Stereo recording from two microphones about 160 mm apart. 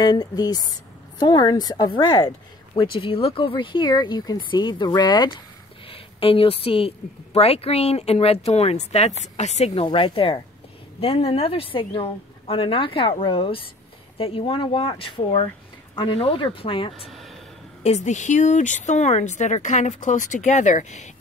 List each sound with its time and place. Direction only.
0.0 s a woman's voice: 25° left (ahead or behind); by 9.8 s 45° left (ahead or behind)
9.8 s a woman's voice: 35° left (ahead or behind)
17.1 s a sound: centre (ahead or behind)
17.8 s speech: 45° left (ahead or behind)